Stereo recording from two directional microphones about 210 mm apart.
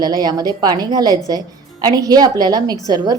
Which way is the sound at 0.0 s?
20° right (ahead or behind).